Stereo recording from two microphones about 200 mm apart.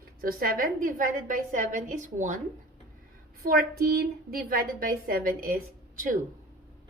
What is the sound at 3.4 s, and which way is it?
A woman's voice, 50° right (ahead or behind).